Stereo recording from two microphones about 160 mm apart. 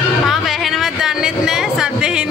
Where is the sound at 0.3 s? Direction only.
Centre (ahead or behind).